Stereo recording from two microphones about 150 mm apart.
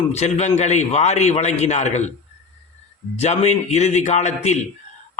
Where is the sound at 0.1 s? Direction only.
45° left (ahead or behind).